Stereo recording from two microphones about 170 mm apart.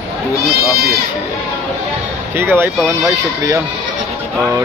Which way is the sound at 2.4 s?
15° right (ahead or behind).